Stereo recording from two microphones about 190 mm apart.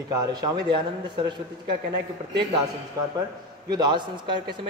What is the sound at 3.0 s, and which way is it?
A man's voice, 20° right (ahead or behind).